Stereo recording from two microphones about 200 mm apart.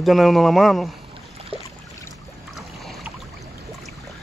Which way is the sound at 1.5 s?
30° right (ahead or behind).